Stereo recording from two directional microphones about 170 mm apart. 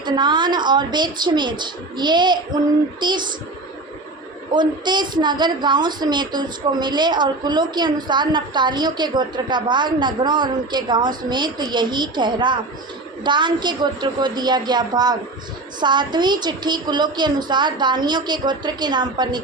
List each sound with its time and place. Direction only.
0.0 s a woman's voice: 25° right (ahead or behind)
4.5 s a woman's voice: 25° right (ahead or behind)